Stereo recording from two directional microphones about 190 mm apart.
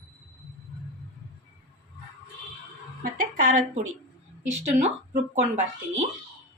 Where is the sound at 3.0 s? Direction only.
45° right (ahead or behind).